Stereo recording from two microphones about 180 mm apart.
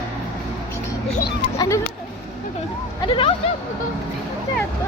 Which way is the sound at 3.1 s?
30° left (ahead or behind).